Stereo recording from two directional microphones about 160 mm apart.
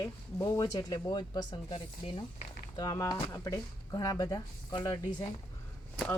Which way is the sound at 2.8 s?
25° left (ahead or behind).